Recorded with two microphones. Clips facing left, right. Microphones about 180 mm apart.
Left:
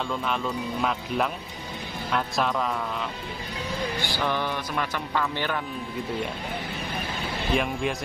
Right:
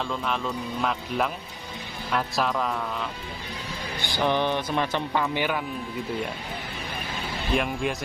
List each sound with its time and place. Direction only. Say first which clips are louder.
0.1 s speech: left 1 dB; centre (ahead or behind)
4.0 s speech: right 7 dB; 20° right (ahead or behind)
7.5 s speech: even; centre (ahead or behind)